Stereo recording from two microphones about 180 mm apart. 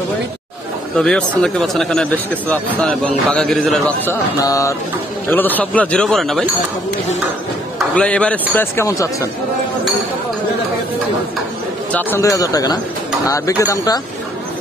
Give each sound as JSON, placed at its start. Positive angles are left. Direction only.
{"t": 0.9, "sound": "a man's voice", "side_deg": 5}
{"t": 7.9, "sound": "a man's voice", "side_deg": 5}
{"t": 11.9, "sound": "speech", "side_deg": 10}